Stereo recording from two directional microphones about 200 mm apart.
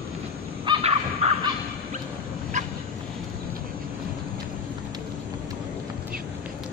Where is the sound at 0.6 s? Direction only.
30° right (ahead or behind).